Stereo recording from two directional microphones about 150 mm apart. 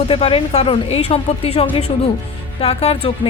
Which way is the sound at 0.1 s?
40° left (ahead or behind).